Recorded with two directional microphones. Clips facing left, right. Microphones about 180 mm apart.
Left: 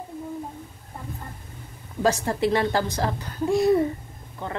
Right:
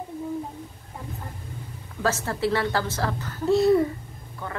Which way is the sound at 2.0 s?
15° left (ahead or behind).